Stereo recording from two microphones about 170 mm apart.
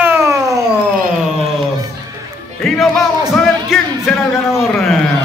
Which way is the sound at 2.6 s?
Centre (ahead or behind).